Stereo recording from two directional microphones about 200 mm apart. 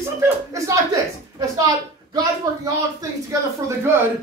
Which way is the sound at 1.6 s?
15° right (ahead or behind).